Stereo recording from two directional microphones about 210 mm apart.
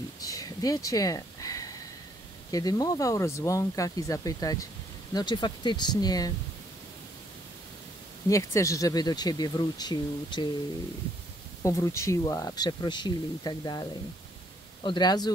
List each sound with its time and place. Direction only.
0.2 s a sound: 15° left (ahead or behind)
2.5 s speech: 20° left (ahead or behind)
8.3 s speech: 15° left (ahead or behind)
11.6 s speech: 15° left (ahead or behind)